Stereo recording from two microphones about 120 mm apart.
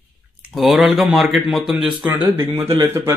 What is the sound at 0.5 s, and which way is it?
Speech, centre (ahead or behind).